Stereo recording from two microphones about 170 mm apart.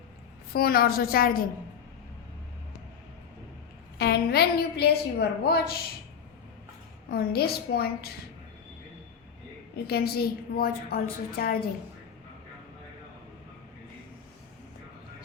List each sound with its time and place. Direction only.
0.5 s a woman's voice: 60° left (ahead or behind)
3.9 s a woman's voice: 70° left (ahead or behind)
7.1 s a woman's voice: 65° left (ahead or behind)
9.8 s a woman's voice: 65° left (ahead or behind)